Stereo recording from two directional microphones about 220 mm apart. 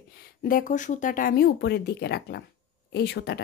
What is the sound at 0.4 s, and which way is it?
A woman's voice, 40° left (ahead or behind).